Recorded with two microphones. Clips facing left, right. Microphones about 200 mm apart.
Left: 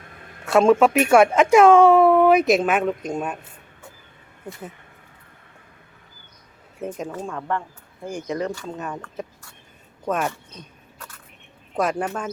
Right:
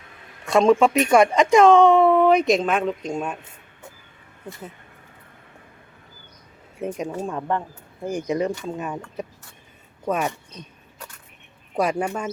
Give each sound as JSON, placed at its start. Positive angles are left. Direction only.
{"t": 0.4, "sound": "speech", "side_deg": 5}
{"t": 6.8, "sound": "speech", "side_deg": -15}
{"t": 11.8, "sound": "speech", "side_deg": -10}